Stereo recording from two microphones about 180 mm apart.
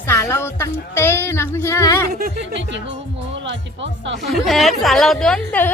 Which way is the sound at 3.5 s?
85° right.